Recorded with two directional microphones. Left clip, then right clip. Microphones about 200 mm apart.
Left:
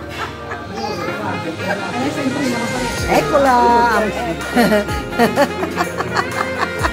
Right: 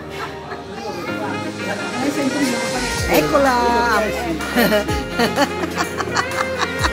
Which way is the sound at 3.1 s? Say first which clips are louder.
Left 2 dB; centre (ahead or behind).